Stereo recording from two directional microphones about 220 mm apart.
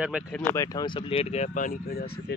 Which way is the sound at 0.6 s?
20° left (ahead or behind).